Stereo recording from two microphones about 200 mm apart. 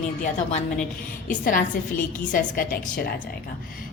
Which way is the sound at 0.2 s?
35° left (ahead or behind).